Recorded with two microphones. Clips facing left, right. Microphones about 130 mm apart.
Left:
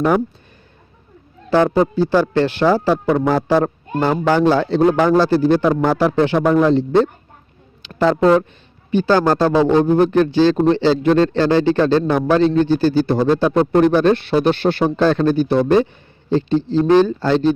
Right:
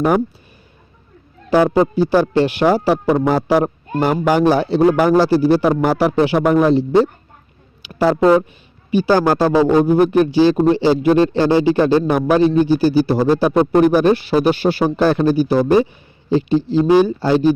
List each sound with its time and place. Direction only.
1.5 s speech: 10° right (ahead or behind)